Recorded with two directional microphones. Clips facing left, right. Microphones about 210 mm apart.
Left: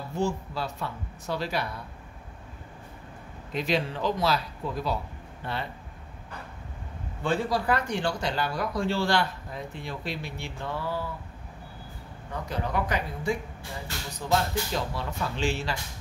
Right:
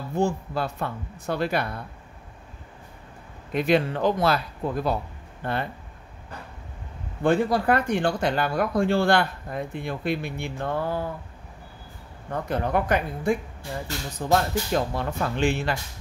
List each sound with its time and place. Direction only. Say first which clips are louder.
0.2 s speech: right 4 dB; 55° right (ahead or behind)
3.5 s speech: right 6 dB; 55° right (ahead or behind)
7.2 s speech: right 5 dB; 55° right (ahead or behind)
12.3 s speech: right 6 dB; 55° right (ahead or behind)